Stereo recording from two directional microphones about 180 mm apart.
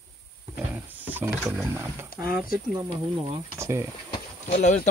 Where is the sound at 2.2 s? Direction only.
55° left (ahead or behind).